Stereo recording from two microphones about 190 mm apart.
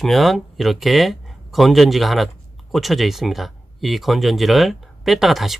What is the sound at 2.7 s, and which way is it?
Speech, centre (ahead or behind).